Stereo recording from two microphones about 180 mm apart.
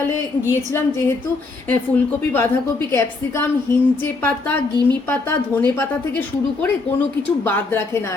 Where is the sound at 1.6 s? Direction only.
10° left (ahead or behind).